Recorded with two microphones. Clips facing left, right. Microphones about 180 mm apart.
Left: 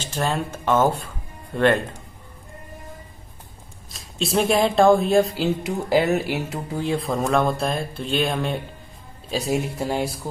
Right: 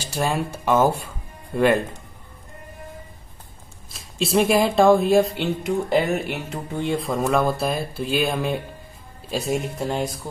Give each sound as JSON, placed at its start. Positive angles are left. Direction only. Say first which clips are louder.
{"t": 0.0, "sound": "speech", "louder": "right 1 dB", "side_deg": -10}
{"t": 3.9, "sound": "speech", "louder": "right 2 dB", "side_deg": 0}